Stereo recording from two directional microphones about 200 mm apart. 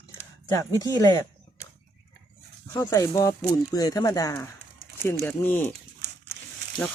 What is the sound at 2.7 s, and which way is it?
Speech, 15° left (ahead or behind).